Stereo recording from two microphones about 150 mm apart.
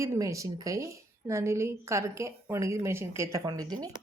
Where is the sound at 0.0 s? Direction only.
20° right (ahead or behind).